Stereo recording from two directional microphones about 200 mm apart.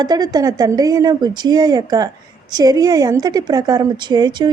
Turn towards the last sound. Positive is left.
turn(degrees=-20)  # may be behind; listen again after turning